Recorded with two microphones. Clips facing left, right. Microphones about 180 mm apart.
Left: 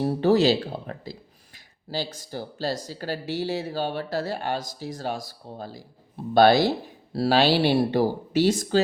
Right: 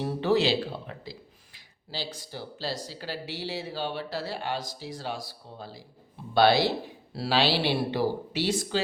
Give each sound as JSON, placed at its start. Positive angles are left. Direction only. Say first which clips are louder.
{"t": 0.0, "sound": "speech", "louder": "left 5 dB", "side_deg": 40}